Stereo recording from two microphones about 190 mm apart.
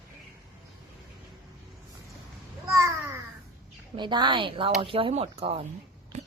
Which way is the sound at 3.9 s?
25° right (ahead or behind).